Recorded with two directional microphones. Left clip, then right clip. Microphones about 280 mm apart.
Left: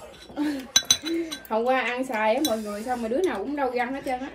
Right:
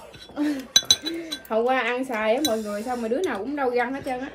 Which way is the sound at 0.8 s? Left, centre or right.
Right.